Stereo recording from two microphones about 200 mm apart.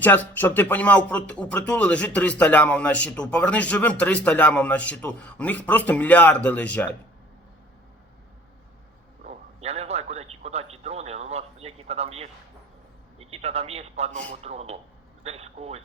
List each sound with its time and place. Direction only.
0.0 s speech: 10° left (ahead or behind)
9.2 s a sound: 30° right (ahead or behind)
13.1 s a man's voice: 30° right (ahead or behind)